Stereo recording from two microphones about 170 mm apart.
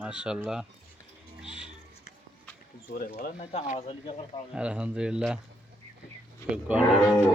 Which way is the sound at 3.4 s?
40° left (ahead or behind).